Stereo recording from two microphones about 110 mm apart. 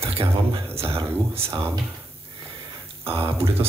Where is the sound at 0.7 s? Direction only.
60° right (ahead or behind).